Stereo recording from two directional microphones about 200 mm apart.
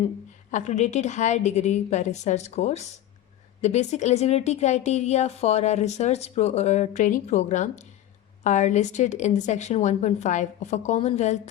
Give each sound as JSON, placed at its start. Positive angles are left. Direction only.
{"t": 0.5, "sound": "a woman's voice", "side_deg": 35}